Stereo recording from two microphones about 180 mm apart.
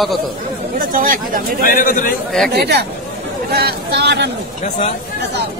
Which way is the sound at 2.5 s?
65° right (ahead or behind).